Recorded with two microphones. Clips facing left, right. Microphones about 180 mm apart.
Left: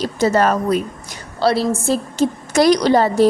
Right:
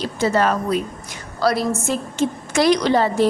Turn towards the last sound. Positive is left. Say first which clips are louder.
# left 3 dB
turn(degrees=40)  # may be behind; listen again after turning